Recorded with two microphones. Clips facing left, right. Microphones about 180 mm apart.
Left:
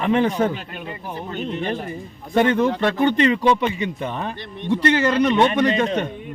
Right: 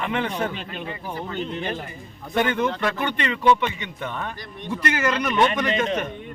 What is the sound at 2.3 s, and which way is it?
A man's voice, 30° left (ahead or behind).